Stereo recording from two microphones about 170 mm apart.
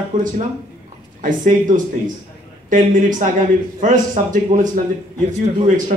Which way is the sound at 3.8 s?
50° right (ahead or behind).